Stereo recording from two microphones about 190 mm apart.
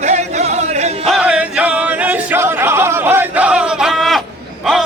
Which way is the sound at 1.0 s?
5° right (ahead or behind).